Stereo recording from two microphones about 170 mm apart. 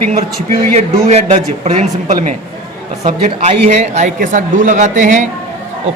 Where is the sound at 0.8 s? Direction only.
40° right (ahead or behind).